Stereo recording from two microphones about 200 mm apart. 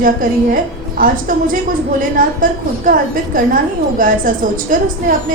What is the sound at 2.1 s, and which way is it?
A woman's voice, 45° right (ahead or behind).